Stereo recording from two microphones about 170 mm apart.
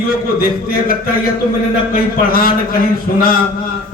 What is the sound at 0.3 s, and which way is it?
A man's voice, 60° left (ahead or behind).